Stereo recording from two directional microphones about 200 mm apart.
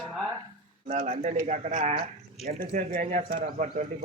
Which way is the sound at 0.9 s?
35° right (ahead or behind).